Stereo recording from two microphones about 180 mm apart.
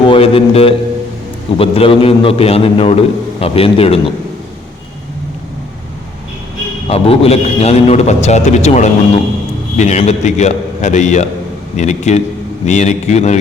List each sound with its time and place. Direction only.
0.0 s a man's voice: 30° left (ahead or behind)
6.8 s a man's voice: 30° left (ahead or behind)